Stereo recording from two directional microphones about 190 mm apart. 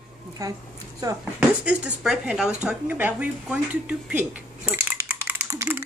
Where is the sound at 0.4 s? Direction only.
20° right (ahead or behind).